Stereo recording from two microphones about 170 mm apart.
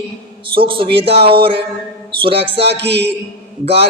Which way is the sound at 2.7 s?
85° right.